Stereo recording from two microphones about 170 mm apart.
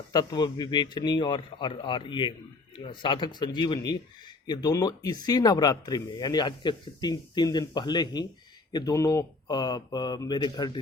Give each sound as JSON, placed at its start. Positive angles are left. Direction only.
{"t": 0.1, "sound": "speech", "side_deg": 25}